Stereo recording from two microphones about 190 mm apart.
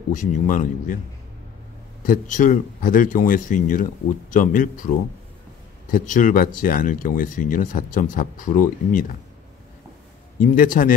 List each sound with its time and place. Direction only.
0.1 s speech: 45° left (ahead or behind)
2.0 s speech: 45° left (ahead or behind)
10.4 s speech: 45° left (ahead or behind)